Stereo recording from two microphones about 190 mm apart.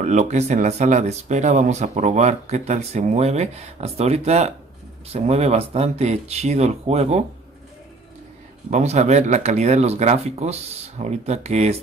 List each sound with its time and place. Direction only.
0.0 s speech: 40° right (ahead or behind)
8.6 s speech: 35° right (ahead or behind)